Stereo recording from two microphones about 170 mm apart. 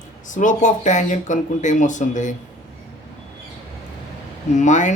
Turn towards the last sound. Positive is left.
turn(degrees=45)  # may be behind; listen again after turning